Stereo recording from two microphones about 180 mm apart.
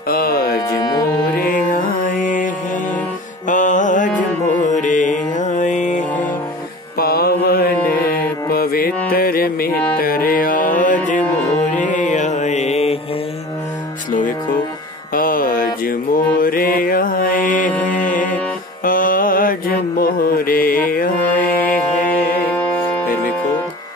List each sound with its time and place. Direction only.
0.1 s speech: 55° left (ahead or behind)
0.7 s music: 20° left (ahead or behind)
1.4 s music: 50° left (ahead or behind)
3.4 s music: 45° left (ahead or behind)
7.0 s music: 60° left (ahead or behind); by 12.9 s 35° left (ahead or behind)
15.1 s mantra: 50° left (ahead or behind)
18.0 s music: 45° left (ahead or behind)
18.9 s mantra: 50° left (ahead or behind)
21.7 s music: 10° left (ahead or behind)